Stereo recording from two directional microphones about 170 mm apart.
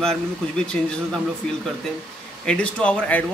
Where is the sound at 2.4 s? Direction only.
5° left (ahead or behind).